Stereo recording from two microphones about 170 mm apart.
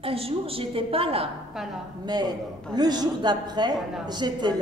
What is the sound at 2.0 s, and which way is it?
A man's voice, 25° right (ahead or behind).